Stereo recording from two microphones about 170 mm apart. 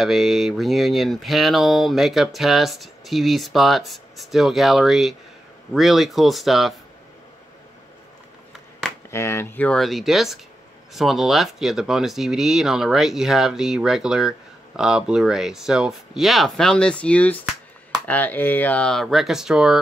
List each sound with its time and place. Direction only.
0.0 s speech: centre (ahead or behind)
9.1 s speech: 15° left (ahead or behind); by 19.8 s 5° right (ahead or behind)